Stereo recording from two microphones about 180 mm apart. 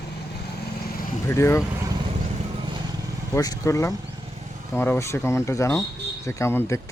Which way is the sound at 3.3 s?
20° left (ahead or behind).